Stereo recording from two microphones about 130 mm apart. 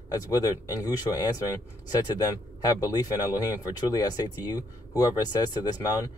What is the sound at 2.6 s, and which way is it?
Speech, 30° left (ahead or behind).